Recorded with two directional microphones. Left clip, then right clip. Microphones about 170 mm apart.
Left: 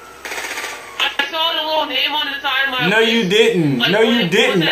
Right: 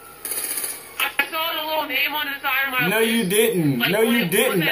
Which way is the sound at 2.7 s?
25° right (ahead or behind).